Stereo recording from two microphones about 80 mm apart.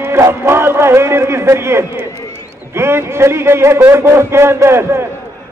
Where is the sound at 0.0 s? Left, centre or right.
Right.